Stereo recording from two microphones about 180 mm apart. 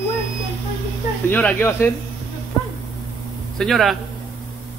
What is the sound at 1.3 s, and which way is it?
Speech, 10° left (ahead or behind).